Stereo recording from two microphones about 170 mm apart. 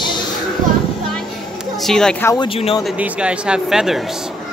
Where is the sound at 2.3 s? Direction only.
30° left (ahead or behind).